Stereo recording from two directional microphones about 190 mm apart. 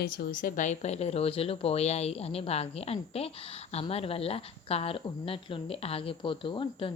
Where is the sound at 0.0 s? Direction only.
50° left (ahead or behind).